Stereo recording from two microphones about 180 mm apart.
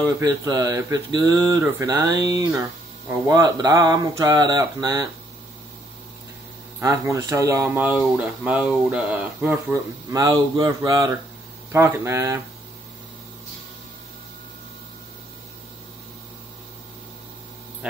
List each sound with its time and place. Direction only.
0.0 s speech: 20° right (ahead or behind)
6.8 s speech: 15° right (ahead or behind)